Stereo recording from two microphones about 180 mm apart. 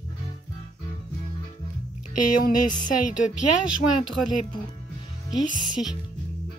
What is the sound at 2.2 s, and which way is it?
Speech, 45° left (ahead or behind).